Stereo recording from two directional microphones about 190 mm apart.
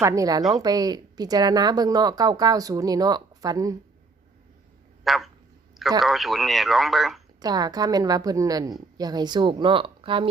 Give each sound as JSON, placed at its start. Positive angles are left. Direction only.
{"t": 0.0, "sound": "a woman's voice", "side_deg": -15}
{"t": 5.0, "sound": "frog", "side_deg": 0}
{"t": 6.0, "sound": "speech", "side_deg": 0}
{"t": 7.3, "sound": "speech", "side_deg": -20}